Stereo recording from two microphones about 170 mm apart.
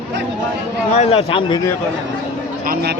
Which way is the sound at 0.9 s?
35° left (ahead or behind).